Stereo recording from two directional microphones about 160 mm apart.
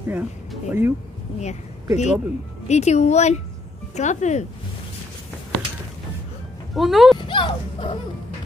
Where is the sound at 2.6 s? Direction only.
45° left (ahead or behind).